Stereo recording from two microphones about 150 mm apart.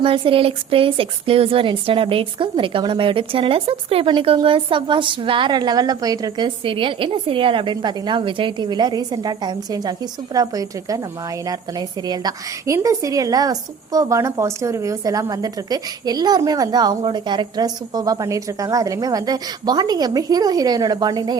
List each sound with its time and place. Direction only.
0.0 s a woman's voice: 35° right (ahead or behind)